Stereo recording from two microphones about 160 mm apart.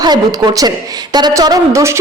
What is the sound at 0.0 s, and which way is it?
A woman's voice, 25° right (ahead or behind).